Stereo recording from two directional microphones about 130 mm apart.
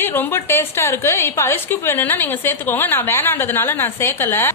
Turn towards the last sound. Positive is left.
turn(degrees=20)  # may be behind; listen again after turning